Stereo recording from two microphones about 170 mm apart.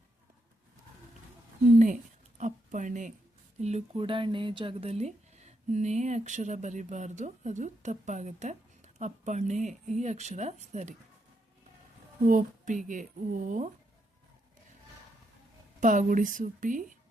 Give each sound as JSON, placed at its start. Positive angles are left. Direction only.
{"t": 2.4, "sound": "a sound", "side_deg": -45}
{"t": 3.6, "sound": "speech", "side_deg": -40}
{"t": 12.2, "sound": "speech", "side_deg": -50}
{"t": 15.8, "sound": "speech", "side_deg": -50}